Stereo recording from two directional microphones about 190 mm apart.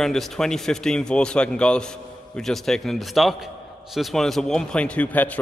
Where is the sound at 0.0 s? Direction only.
Centre (ahead or behind).